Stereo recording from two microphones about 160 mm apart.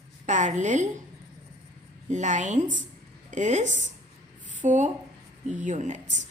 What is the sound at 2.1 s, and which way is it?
A woman's voice, 50° right (ahead or behind).